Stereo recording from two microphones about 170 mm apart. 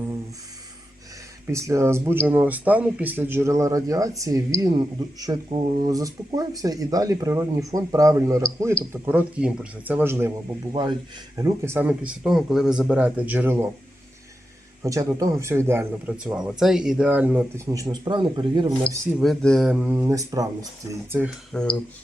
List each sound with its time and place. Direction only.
1.5 s speech: 15° right (ahead or behind)
14.8 s speech: 20° right (ahead or behind)
17.7 s speech: 20° right (ahead or behind)
19.2 s speech: centre (ahead or behind)